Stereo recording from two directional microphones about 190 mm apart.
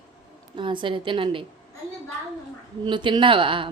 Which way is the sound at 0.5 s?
25° right (ahead or behind).